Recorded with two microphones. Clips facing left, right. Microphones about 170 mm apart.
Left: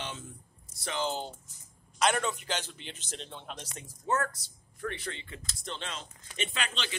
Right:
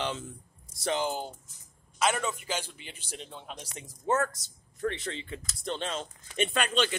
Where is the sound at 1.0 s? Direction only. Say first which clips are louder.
Right 1 dB; 10° right (ahead or behind).